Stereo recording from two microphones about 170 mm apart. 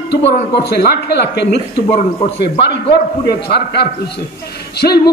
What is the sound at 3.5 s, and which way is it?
A man's voice, 75° left (ahead or behind).